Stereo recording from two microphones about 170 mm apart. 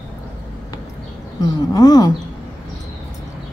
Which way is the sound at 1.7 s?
20° left (ahead or behind).